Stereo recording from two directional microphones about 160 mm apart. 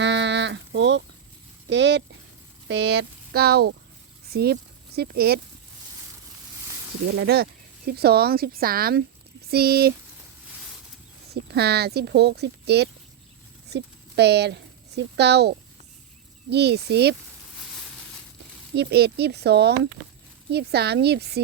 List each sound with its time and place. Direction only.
0.0 s a sound: 90° right
1.7 s speech: 90° right
7.2 s speech: 80° right
11.5 s speech: 90° right
18.8 s speech: 90° right